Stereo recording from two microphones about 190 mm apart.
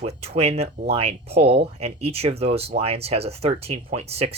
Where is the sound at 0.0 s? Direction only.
35° right (ahead or behind).